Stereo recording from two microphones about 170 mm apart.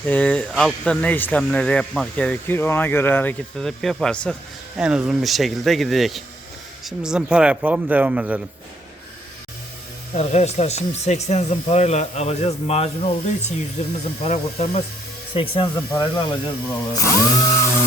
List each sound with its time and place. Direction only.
0.0 s speech: 10° left (ahead or behind)
4.8 s speech: 5° right (ahead or behind)
10.2 s speech: 40° left (ahead or behind); by 17.7 s 15° left (ahead or behind)